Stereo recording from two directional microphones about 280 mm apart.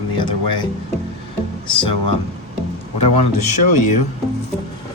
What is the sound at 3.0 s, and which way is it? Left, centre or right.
A man's voice, left.